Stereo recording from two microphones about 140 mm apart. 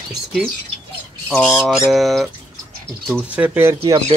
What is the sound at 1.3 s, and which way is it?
Speech, centre (ahead or behind).